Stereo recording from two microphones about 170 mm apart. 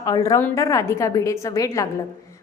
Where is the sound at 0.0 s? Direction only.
20° left (ahead or behind).